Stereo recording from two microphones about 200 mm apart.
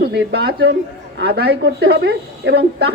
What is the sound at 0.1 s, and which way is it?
A man's voice, 55° right (ahead or behind).